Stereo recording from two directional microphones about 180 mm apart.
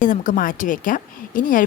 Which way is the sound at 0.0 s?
45° left (ahead or behind).